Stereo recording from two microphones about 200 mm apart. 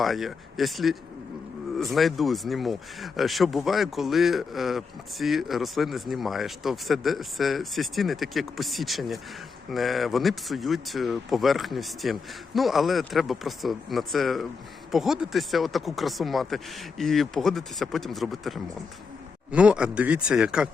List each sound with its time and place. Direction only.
0.0 s speech: centre (ahead or behind)